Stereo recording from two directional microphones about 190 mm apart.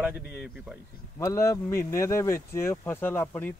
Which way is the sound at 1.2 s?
15° left (ahead or behind).